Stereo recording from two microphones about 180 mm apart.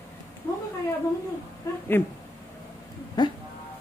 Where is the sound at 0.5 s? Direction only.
15° left (ahead or behind).